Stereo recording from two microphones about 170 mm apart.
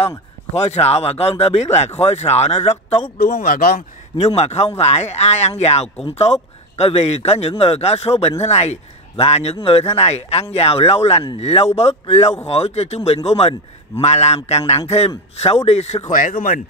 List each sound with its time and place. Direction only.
0.6 s speech: 40° left (ahead or behind)
3.4 s speech: 60° left (ahead or behind)
4.2 s speech: 40° left (ahead or behind)
16.1 s speech: 50° left (ahead or behind)